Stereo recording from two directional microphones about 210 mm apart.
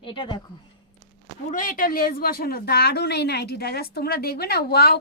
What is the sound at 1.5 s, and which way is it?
A woman's voice, 40° left (ahead or behind).